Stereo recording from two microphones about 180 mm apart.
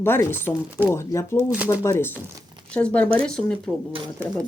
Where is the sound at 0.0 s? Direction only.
15° left (ahead or behind).